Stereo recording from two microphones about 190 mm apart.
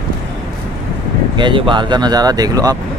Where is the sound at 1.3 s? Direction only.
25° right (ahead or behind).